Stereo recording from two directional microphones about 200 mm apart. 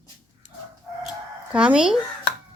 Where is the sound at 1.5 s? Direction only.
5° right (ahead or behind).